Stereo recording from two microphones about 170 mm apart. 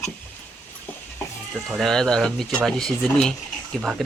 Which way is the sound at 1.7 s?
Centre (ahead or behind).